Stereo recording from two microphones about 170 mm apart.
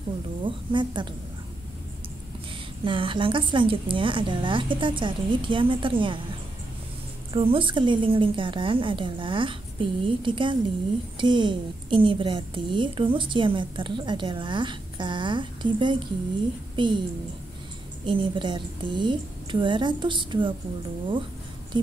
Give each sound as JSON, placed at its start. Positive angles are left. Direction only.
{"t": 0.4, "sound": "a woman's voice", "side_deg": -30}
{"t": 2.8, "sound": "a woman's voice", "side_deg": -30}
{"t": 7.3, "sound": "a woman's voice", "side_deg": -30}
{"t": 18.0, "sound": "a woman's voice", "side_deg": -30}